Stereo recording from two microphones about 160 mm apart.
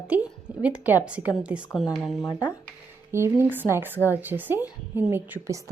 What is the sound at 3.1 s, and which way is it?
A woman's voice, 15° right (ahead or behind).